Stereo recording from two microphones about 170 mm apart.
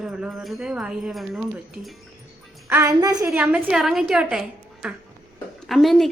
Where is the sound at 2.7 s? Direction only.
20° right (ahead or behind).